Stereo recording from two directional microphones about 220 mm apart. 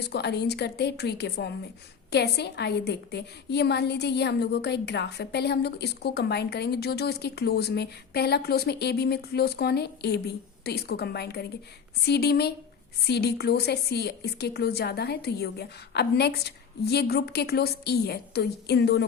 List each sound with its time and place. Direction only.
0.1 s a woman's voice: 50° left (ahead or behind)